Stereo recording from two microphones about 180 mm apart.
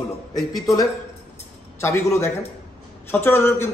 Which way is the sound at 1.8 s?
15° left (ahead or behind).